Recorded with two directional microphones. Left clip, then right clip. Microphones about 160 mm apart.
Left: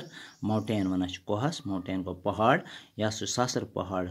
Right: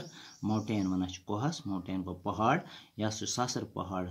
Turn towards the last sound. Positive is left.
turn(degrees=30)  # may be behind; listen again after turning